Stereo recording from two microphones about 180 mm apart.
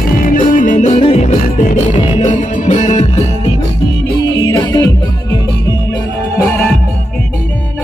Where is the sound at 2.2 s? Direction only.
45° left (ahead or behind).